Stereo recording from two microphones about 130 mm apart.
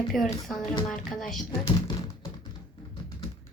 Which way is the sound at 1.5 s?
25° left (ahead or behind).